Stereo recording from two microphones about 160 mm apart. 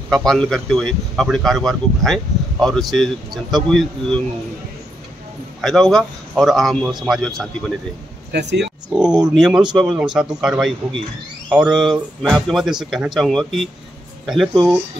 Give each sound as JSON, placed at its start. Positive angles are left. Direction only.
{"t": 0.1, "sound": "speech", "side_deg": 5}
{"t": 5.6, "sound": "speech", "side_deg": 0}
{"t": 8.3, "sound": "speech", "side_deg": -90}
{"t": 8.9, "sound": "speech", "side_deg": -5}